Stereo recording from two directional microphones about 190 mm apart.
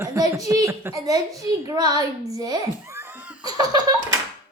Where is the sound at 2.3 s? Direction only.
20° right (ahead or behind).